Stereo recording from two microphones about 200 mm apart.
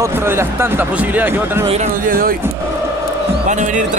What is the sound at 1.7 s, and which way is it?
Speech, 40° right (ahead or behind).